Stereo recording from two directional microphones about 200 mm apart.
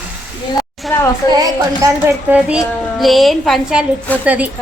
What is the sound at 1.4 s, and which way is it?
A woman's voice, 15° right (ahead or behind).